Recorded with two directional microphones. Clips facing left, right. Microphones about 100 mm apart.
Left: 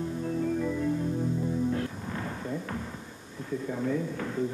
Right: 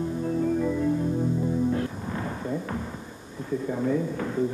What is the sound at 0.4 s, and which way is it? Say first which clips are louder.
Music: right 4 dB; 20° right (ahead or behind).